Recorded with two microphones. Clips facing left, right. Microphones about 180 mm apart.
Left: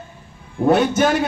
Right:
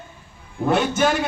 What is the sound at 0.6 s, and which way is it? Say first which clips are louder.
Speech: left 4 dB; 40° left (ahead or behind).